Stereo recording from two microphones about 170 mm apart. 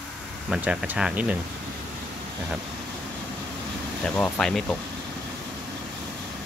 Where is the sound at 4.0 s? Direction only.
5° left (ahead or behind).